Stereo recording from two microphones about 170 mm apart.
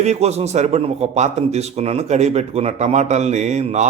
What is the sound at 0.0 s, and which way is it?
A man's voice, 40° right (ahead or behind).